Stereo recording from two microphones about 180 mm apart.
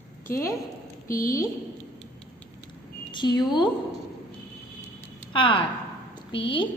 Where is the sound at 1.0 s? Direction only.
50° left (ahead or behind).